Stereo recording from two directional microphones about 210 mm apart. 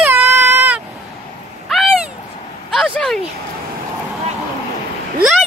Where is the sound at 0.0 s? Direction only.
10° right (ahead or behind).